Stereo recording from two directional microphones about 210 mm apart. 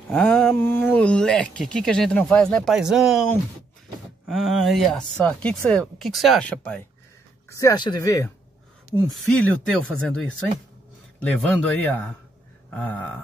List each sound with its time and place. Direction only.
0.1 s speech: 5° left (ahead or behind)
4.3 s speech: centre (ahead or behind); by 8.3 s 15° left (ahead or behind)
9.1 s speech: 5° left (ahead or behind)